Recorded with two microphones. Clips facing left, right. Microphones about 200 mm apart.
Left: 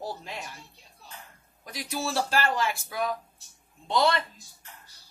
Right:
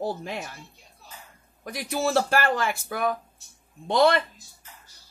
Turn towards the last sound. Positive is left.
turn(degrees=-55)  # may be behind; listen again after turning